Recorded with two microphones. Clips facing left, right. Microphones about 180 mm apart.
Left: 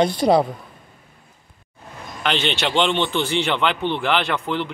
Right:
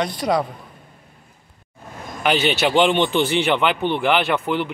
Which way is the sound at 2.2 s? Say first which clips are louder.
Right 4 dB; 10° right (ahead or behind).